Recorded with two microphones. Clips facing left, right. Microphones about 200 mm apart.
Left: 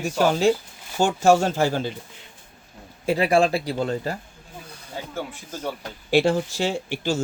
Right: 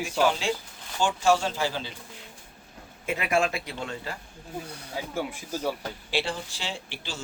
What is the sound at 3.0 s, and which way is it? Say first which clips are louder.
Speech: left 7 dB; 35° left (ahead or behind).